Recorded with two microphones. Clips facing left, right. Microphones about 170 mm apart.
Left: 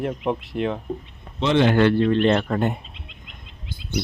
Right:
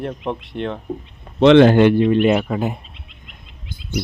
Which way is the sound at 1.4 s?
65° right (ahead or behind).